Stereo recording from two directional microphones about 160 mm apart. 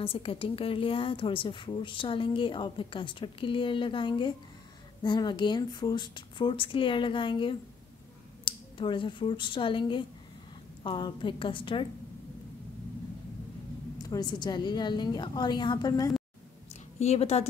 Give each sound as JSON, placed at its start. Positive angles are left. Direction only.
{"t": 0.0, "sound": "a woman's voice", "side_deg": 35}
{"t": 13.9, "sound": "a woman's voice", "side_deg": 25}
{"t": 17.0, "sound": "a woman's voice", "side_deg": 40}